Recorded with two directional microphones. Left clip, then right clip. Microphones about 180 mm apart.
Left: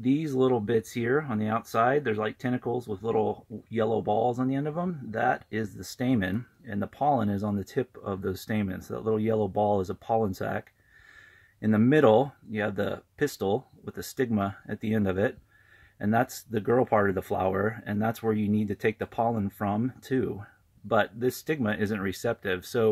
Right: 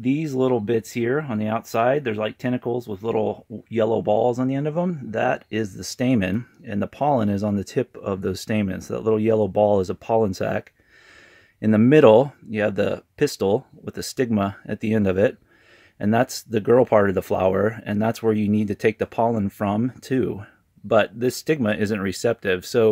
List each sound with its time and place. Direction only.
0.1 s speech: 35° right (ahead or behind)